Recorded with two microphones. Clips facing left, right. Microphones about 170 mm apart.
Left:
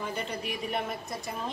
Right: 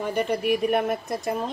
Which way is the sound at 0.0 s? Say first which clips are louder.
Right 10 dB; 60° right (ahead or behind).